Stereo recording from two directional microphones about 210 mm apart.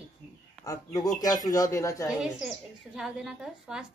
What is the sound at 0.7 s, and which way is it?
Speech, 15° left (ahead or behind).